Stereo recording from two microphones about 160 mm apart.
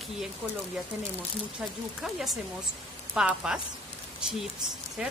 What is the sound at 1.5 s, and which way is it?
Speech, centre (ahead or behind).